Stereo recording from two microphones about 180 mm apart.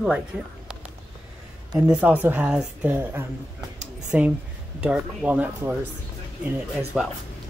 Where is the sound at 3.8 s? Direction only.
40° right (ahead or behind).